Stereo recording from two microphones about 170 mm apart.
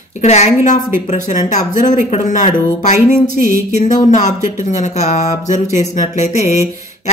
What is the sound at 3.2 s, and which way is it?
Music, 60° right (ahead or behind).